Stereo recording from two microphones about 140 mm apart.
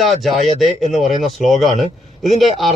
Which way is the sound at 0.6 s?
Centre (ahead or behind).